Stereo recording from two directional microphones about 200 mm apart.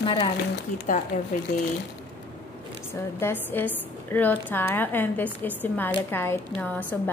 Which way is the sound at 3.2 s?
10° left (ahead or behind).